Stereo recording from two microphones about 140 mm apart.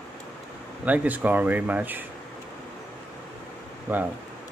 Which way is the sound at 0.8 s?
10° right (ahead or behind).